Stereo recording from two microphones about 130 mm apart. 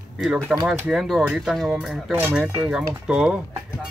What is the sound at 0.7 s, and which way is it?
Speech, 5° right (ahead or behind).